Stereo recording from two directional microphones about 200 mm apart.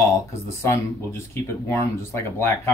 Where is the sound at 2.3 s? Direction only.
15° left (ahead or behind).